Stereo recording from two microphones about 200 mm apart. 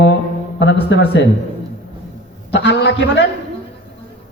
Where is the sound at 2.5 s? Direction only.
60° left (ahead or behind).